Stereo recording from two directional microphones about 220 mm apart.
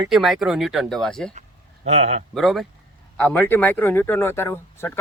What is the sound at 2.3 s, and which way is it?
Speech, centre (ahead or behind).